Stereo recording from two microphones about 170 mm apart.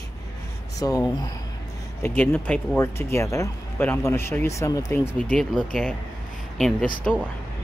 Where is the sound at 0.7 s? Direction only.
20° left (ahead or behind).